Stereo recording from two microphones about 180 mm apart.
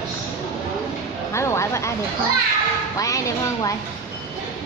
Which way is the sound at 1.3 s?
15° left (ahead or behind).